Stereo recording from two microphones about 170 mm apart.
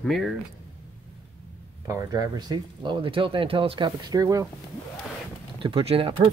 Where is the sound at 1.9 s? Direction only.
20° right (ahead or behind).